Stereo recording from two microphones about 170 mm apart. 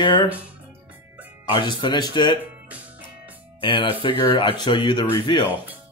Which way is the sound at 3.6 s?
30° left (ahead or behind).